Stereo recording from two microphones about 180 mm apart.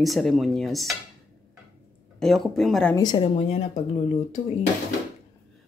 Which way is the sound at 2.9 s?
20° left (ahead or behind).